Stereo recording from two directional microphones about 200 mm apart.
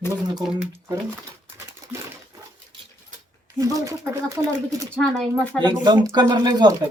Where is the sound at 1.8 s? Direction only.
15° right (ahead or behind).